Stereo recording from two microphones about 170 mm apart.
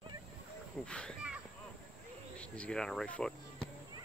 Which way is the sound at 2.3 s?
5° left (ahead or behind).